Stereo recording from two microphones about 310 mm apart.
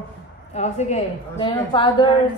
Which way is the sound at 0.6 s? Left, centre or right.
Left.